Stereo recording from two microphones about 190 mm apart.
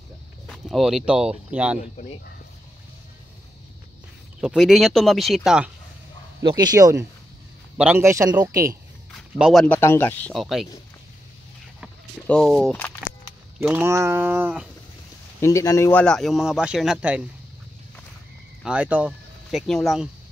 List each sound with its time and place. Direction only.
0.5 s speech: centre (ahead or behind)
4.4 s speech: 5° right (ahead or behind)
6.4 s speech: 20° right (ahead or behind)
9.1 s speech: centre (ahead or behind)
9.8 s speech: 10° left (ahead or behind)
10.3 s speech: centre (ahead or behind)
12.3 s speech: centre (ahead or behind)
13.6 s speech: 10° right (ahead or behind)
15.4 s speech: 15° left (ahead or behind); by 17.2 s 5° right (ahead or behind)
18.6 s speech: 5° right (ahead or behind)